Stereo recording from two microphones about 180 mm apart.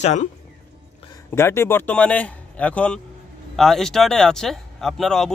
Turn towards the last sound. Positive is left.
turn(degrees=0)  # may be behind; listen again after turning